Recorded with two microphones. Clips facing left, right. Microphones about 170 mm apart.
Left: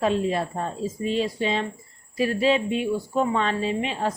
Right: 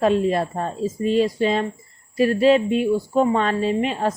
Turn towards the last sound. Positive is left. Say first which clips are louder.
# right 4 dB
turn(degrees=-50)  # may be behind; listen again after turning